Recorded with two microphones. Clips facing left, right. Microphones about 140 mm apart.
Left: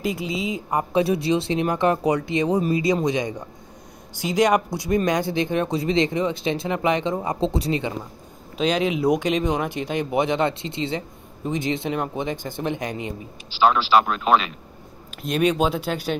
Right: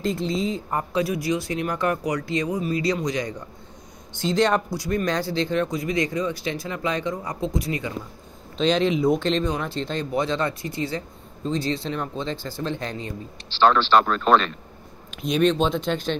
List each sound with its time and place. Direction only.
0.0 s speech: 10° left (ahead or behind)
1.0 s speech: 25° left (ahead or behind)
8.5 s speech: 5° left (ahead or behind)